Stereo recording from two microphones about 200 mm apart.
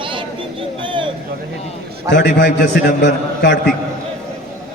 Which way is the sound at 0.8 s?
25° right (ahead or behind).